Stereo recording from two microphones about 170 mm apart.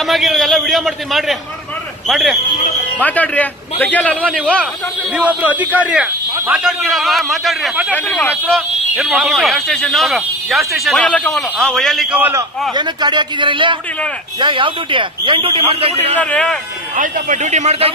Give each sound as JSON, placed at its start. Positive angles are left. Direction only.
{"t": 0.0, "sound": "a man's voice", "side_deg": 0}
{"t": 5.1, "sound": "a man's voice", "side_deg": -10}
{"t": 7.9, "sound": "speech", "side_deg": 10}
{"t": 12.2, "sound": "a man's voice", "side_deg": -15}
{"t": 12.7, "sound": "speech", "side_deg": -25}
{"t": 16.2, "sound": "a man's voice", "side_deg": 10}
{"t": 16.9, "sound": "a man's voice", "side_deg": -50}